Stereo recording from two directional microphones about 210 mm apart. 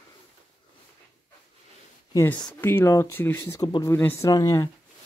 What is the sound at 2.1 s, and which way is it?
Speech, 15° left (ahead or behind).